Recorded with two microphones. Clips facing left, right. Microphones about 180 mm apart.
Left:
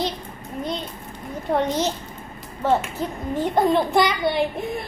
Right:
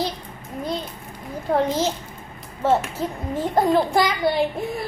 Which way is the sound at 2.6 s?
Centre (ahead or behind).